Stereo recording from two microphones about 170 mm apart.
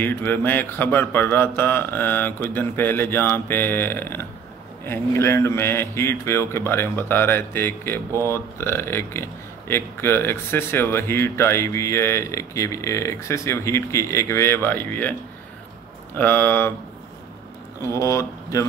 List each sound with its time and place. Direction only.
0.0 s speech: 10° left (ahead or behind)
16.2 s speech: 15° left (ahead or behind)
17.8 s speech: 20° left (ahead or behind)